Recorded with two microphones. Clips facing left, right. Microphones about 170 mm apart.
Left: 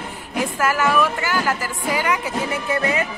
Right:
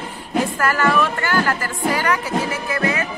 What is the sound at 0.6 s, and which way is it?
Speech, 10° left (ahead or behind).